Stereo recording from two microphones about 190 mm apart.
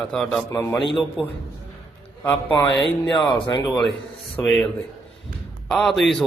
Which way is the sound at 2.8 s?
25° left (ahead or behind).